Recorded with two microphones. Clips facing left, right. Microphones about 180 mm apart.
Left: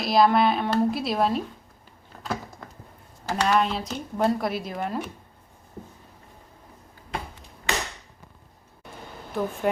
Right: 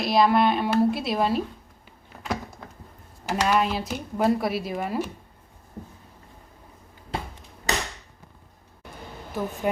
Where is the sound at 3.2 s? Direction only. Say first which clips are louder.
Even; 10° right (ahead or behind).